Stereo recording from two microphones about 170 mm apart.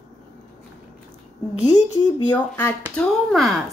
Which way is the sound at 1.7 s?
25° left (ahead or behind).